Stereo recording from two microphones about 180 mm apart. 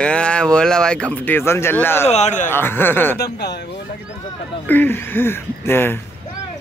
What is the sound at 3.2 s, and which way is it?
Speech, 70° left (ahead or behind).